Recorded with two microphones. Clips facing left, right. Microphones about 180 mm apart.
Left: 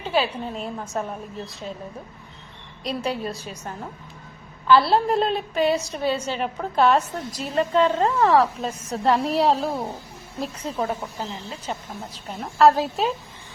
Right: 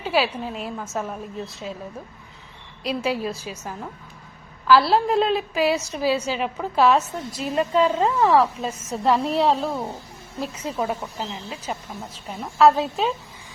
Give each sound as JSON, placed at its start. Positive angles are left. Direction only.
{"t": 0.0, "sound": "a woman's voice", "side_deg": -10}
{"t": 2.8, "sound": "a woman's voice", "side_deg": -5}
{"t": 12.4, "sound": "a woman's voice", "side_deg": 0}